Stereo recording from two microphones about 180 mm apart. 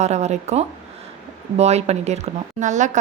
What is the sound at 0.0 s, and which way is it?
A woman's voice, 40° right (ahead or behind).